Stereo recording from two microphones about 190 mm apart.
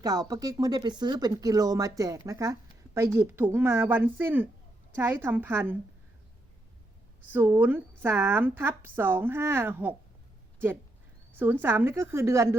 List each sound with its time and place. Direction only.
0.0 s speech: 20° right (ahead or behind)
7.3 s speech: 10° right (ahead or behind)
11.6 s speech: 10° right (ahead or behind)